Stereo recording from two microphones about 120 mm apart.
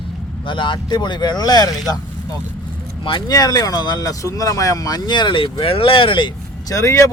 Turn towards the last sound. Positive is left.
turn(degrees=25)  # may be behind; listen again after turning